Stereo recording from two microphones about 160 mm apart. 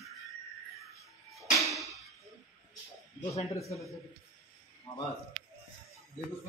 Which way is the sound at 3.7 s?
20° left (ahead or behind).